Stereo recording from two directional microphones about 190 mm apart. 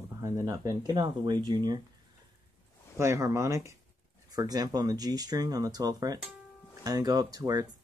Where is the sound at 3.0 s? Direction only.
15° right (ahead or behind).